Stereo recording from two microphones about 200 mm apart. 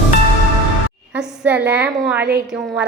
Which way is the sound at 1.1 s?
5° right (ahead or behind).